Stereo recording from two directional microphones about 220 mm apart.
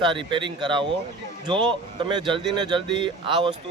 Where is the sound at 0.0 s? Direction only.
20° right (ahead or behind).